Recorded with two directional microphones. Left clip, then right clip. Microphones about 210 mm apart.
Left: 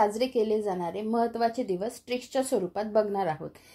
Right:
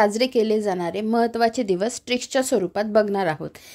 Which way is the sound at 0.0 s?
40° right (ahead or behind).